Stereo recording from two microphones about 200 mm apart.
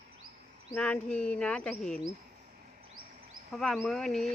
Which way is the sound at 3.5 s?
Centre (ahead or behind).